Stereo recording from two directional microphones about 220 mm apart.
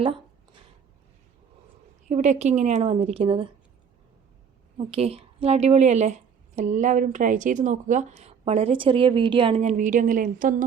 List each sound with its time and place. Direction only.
2.0 s a woman's voice: 35° right (ahead or behind)
4.8 s a woman's voice: 25° right (ahead or behind)